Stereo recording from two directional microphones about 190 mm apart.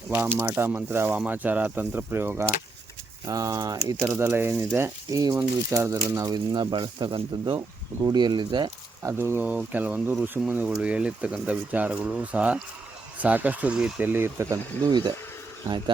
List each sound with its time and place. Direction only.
0.1 s speech: 10° right (ahead or behind)
14.5 s speech: 20° right (ahead or behind)